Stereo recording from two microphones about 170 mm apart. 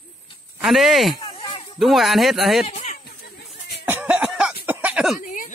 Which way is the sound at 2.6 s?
40° left (ahead or behind).